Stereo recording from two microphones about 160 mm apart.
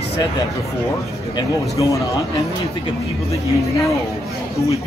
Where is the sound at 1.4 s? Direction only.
20° left (ahead or behind).